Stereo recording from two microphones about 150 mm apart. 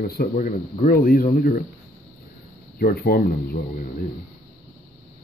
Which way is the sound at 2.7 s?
85° left.